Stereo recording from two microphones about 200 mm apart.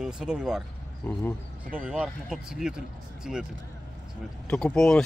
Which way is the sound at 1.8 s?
5° right (ahead or behind).